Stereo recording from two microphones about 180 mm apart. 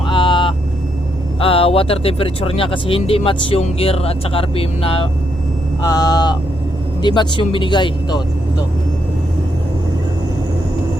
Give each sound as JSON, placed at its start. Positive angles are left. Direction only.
{"t": 0.1, "sound": "vehicle", "side_deg": 25}
{"t": 1.4, "sound": "speech", "side_deg": 30}
{"t": 5.8, "sound": "speech", "side_deg": 20}